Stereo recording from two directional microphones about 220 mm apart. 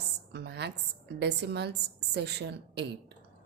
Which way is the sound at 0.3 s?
50° right (ahead or behind).